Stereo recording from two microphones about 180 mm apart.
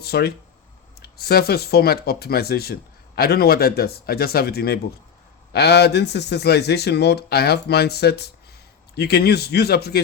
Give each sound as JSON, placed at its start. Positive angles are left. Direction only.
{"t": 0.0, "sound": "speech", "side_deg": 60}